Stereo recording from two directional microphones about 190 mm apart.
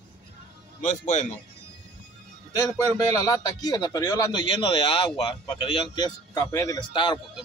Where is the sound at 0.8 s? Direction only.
40° left (ahead or behind).